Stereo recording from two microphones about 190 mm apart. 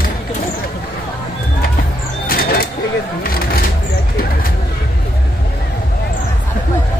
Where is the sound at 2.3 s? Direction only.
50° left (ahead or behind).